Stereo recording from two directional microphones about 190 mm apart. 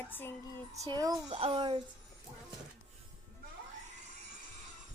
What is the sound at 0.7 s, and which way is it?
Speech, 20° right (ahead or behind).